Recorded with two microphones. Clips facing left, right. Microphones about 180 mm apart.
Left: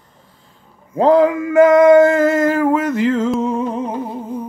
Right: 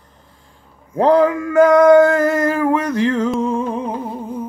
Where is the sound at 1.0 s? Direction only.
Centre (ahead or behind).